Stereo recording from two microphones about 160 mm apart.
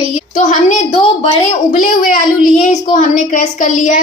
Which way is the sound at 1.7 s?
55° left (ahead or behind).